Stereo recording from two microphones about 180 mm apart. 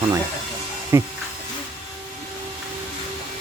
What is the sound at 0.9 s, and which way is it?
Speech, 15° right (ahead or behind).